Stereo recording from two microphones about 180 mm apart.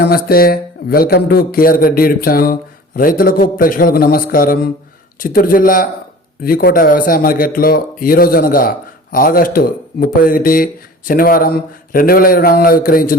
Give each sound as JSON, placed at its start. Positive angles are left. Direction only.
{"t": 0.0, "sound": "speech", "side_deg": 55}